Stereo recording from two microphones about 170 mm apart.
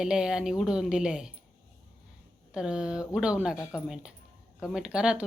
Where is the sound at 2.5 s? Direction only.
5° right (ahead or behind).